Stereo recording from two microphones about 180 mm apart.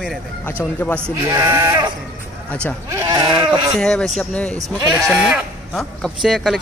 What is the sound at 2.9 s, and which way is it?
Speech, 20° right (ahead or behind).